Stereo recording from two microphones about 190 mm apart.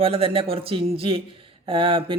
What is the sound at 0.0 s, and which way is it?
A man's voice, 30° right (ahead or behind).